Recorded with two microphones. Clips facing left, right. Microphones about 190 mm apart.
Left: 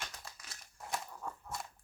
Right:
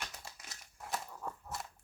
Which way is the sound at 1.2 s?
5° right (ahead or behind).